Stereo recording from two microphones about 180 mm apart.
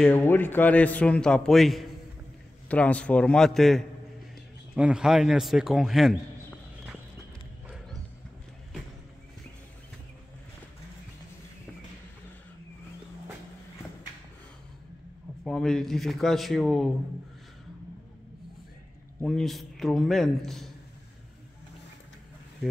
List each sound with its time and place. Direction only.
0.0 s a man's voice: 10° left (ahead or behind)
7.6 s horse: 5° right (ahead or behind)
15.4 s speech: 5° left (ahead or behind)
19.2 s speech: centre (ahead or behind)